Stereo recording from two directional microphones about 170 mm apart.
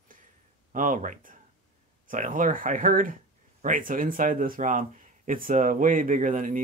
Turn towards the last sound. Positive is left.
turn(degrees=-50)  # may be behind; listen again after turning